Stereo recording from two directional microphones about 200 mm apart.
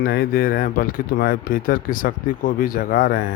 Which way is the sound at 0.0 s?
50° left (ahead or behind).